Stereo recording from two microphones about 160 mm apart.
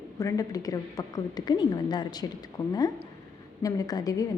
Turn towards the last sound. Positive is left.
turn(degrees=20)  # may be behind; listen again after turning